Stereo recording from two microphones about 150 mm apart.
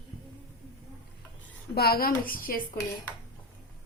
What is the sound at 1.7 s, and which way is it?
Speech, 90° left.